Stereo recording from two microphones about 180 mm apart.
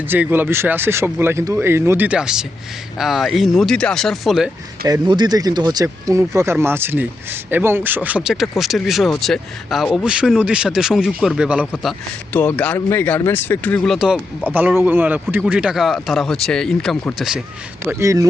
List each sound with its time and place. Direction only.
0.1 s speech: 10° right (ahead or behind)
4.9 s speech: 25° right (ahead or behind); by 17.4 s centre (ahead or behind)
18.0 s speech: 15° right (ahead or behind)